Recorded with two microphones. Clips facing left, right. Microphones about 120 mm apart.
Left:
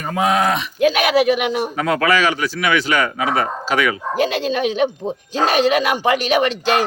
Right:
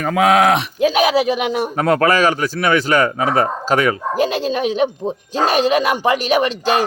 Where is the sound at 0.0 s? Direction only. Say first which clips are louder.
Right 4 dB; 90° right.